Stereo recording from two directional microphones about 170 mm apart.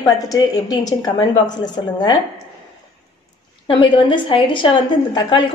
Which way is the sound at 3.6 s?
30° left (ahead or behind).